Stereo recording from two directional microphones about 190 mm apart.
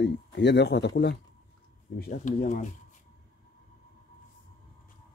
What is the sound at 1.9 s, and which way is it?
Speech, 45° left (ahead or behind).